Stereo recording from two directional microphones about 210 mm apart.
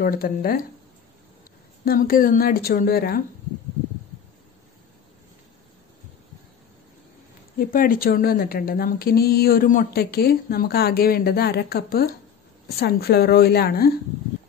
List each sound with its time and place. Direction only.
0.0 s a woman's voice: 45° left (ahead or behind)
1.9 s a woman's voice: 45° left (ahead or behind)
7.5 s a woman's voice: 40° left (ahead or behind)